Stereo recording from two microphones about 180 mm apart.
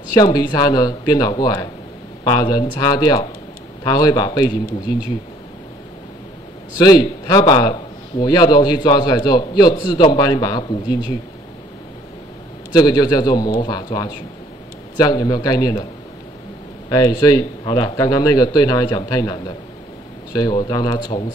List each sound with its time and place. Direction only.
0.1 s a man's voice: 20° left (ahead or behind)
6.8 s a man's voice: 25° left (ahead or behind)
12.7 s a man's voice: 25° left (ahead or behind)
16.9 s a man's voice: 20° left (ahead or behind)